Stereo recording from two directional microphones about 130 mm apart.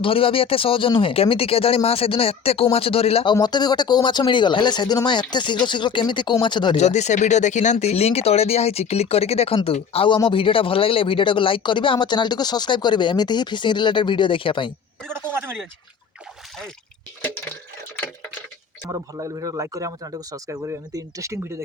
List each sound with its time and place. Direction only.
0.0 s speech: 45° left (ahead or behind)
3.3 s speech: 30° left (ahead or behind)
6.7 s speech: 60° left (ahead or behind); by 14.7 s 40° left (ahead or behind)
15.1 s speech: 15° right (ahead or behind)
18.9 s speech: 25° right (ahead or behind)